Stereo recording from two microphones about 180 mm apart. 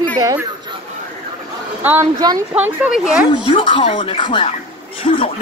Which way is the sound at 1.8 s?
10° right (ahead or behind).